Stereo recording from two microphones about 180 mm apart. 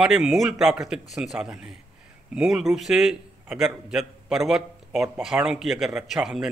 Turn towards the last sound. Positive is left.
turn(degrees=-5)  # may be behind; listen again after turning